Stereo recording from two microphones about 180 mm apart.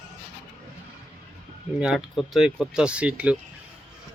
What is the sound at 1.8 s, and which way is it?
Speech, centre (ahead or behind).